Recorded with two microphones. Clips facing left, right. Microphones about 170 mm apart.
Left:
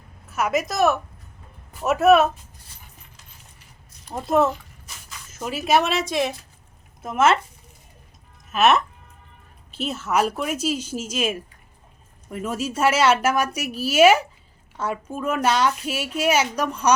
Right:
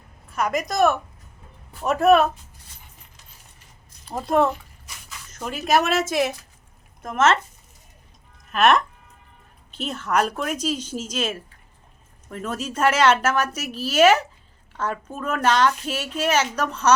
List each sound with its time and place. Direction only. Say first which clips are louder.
0.3 s a woman's voice: left 1 dB; 5° left (ahead or behind)
4.1 s a woman's voice: even; centre (ahead or behind)
7.0 s a woman's voice: left 1 dB; 10° left (ahead or behind)
8.5 s a woman's voice: even; 5° left (ahead or behind)